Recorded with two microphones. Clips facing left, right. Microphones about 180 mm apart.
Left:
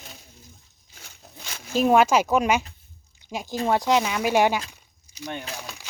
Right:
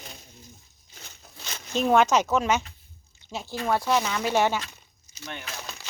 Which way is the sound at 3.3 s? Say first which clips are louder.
Left 3 dB; 15° left (ahead or behind).